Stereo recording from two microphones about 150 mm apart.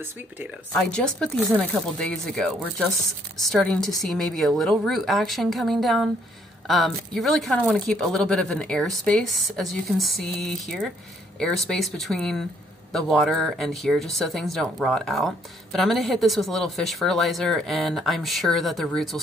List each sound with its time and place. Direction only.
0.7 s speech: 5° left (ahead or behind)